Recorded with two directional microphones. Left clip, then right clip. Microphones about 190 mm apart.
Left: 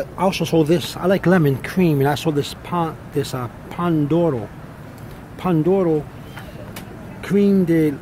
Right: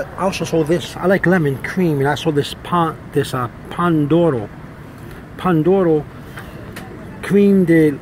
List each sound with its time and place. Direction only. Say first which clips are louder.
0.0 s speech: even; 35° left (ahead or behind)
0.9 s speech: right 4 dB; 15° left (ahead or behind)
1.4 s speech: even; 30° left (ahead or behind)
2.3 s speech: right 5 dB; centre (ahead or behind)
7.2 s a man's voice: right 4 dB; 5° left (ahead or behind)